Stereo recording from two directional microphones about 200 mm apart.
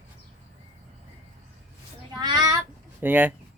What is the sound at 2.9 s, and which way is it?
Speech, 10° right (ahead or behind).